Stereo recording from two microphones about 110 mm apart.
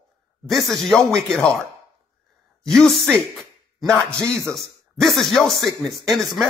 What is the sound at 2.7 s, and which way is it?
Speech, 5° left (ahead or behind).